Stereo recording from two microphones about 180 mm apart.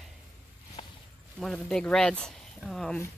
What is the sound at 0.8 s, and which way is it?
Walk, 30° left (ahead or behind).